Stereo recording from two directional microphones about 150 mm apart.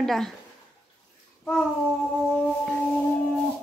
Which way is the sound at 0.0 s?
Centre (ahead or behind).